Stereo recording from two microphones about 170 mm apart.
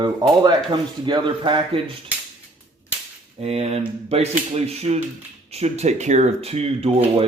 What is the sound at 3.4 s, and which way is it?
Speech, 35° right (ahead or behind).